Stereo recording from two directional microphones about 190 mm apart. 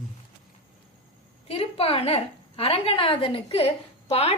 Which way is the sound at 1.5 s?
30° left (ahead or behind).